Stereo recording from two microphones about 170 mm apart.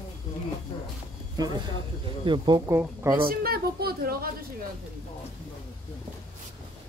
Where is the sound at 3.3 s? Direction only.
60° right (ahead or behind).